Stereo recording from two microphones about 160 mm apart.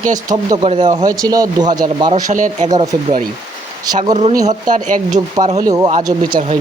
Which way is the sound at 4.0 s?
45° right (ahead or behind).